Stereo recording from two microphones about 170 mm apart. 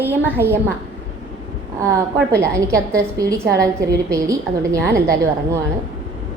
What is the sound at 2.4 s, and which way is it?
A woman's voice, 15° right (ahead or behind).